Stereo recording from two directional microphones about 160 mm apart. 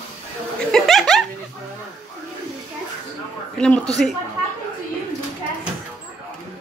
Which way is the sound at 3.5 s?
5° left (ahead or behind).